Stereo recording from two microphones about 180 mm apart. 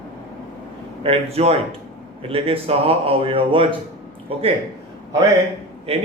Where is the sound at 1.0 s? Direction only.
35° right (ahead or behind).